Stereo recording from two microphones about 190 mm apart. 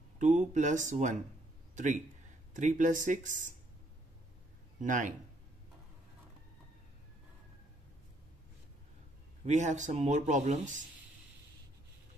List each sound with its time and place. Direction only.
0.2 s speech: 40° right (ahead or behind)
4.8 s speech: 40° right (ahead or behind)
9.4 s speech: 40° right (ahead or behind)